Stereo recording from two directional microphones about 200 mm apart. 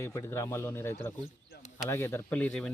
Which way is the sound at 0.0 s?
15° left (ahead or behind).